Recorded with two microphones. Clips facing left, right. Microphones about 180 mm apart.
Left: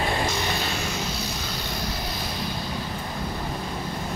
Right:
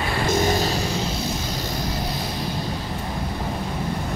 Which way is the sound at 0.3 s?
45° right (ahead or behind).